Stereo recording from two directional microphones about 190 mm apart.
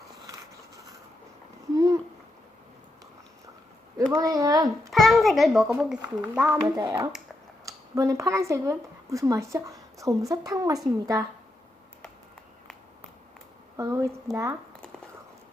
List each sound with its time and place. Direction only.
1.7 s a sound: 20° right (ahead or behind)
4.1 s speech: 20° right (ahead or behind)
4.9 s a child's voice: centre (ahead or behind)
6.7 s speech: 20° right (ahead or behind)
13.7 s speech: 15° right (ahead or behind)